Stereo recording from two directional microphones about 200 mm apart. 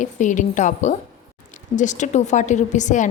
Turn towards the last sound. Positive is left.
turn(degrees=40)  # may be behind; listen again after turning